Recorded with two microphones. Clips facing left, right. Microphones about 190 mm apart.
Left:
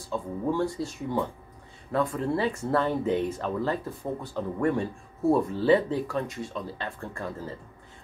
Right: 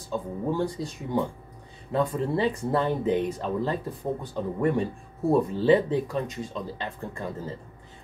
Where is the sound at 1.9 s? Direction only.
20° right (ahead or behind).